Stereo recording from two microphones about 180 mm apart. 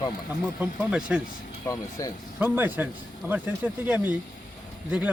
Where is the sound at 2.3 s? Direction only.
10° right (ahead or behind).